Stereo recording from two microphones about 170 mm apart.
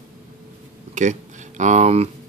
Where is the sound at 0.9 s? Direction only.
45° right (ahead or behind).